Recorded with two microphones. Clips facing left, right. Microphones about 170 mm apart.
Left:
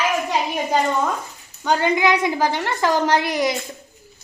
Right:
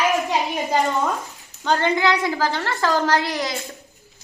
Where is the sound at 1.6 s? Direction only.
10° left (ahead or behind).